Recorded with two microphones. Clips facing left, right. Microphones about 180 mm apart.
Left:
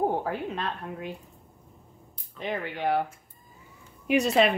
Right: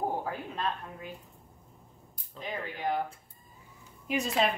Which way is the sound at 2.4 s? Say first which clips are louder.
Left 5 dB; 70° left (ahead or behind).